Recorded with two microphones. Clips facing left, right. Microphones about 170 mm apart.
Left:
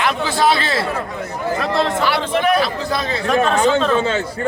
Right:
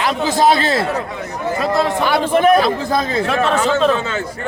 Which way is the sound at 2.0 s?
50° right (ahead or behind).